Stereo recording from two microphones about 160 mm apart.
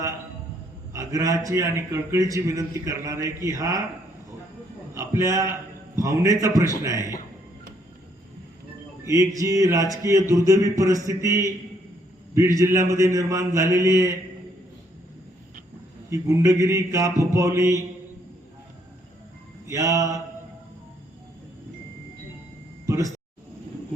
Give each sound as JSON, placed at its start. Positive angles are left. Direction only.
{"t": 0.9, "sound": "a man's voice", "side_deg": -20}
{"t": 4.9, "sound": "a man's voice", "side_deg": -20}
{"t": 9.0, "sound": "a man's voice", "side_deg": -20}
{"t": 16.0, "sound": "a man's voice", "side_deg": -20}
{"t": 19.6, "sound": "a man's voice", "side_deg": -20}
{"t": 22.9, "sound": "a sound", "side_deg": -20}